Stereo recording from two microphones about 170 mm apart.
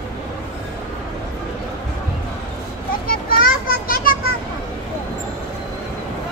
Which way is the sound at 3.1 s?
60° left (ahead or behind).